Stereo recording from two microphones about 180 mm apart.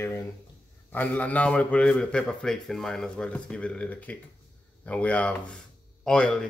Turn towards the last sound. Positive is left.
turn(degrees=5)  # may be behind; listen again after turning